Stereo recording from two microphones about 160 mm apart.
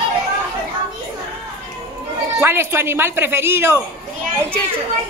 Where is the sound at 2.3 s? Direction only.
15° right (ahead or behind).